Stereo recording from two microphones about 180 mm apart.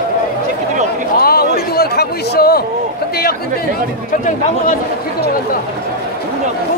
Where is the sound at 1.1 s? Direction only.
60° left (ahead or behind).